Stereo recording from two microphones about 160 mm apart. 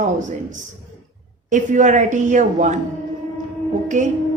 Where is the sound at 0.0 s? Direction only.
50° right (ahead or behind).